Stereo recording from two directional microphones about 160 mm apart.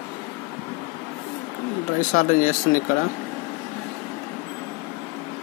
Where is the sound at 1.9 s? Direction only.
55° left (ahead or behind).